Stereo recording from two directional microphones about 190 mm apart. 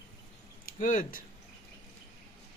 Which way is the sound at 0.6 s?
45° left (ahead or behind).